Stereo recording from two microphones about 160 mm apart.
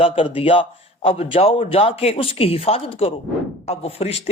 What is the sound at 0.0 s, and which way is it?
Speech, 35° left (ahead or behind).